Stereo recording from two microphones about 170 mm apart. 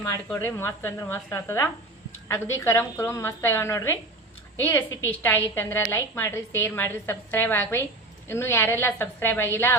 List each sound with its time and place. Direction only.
0.3 s a woman's voice: 15° left (ahead or behind)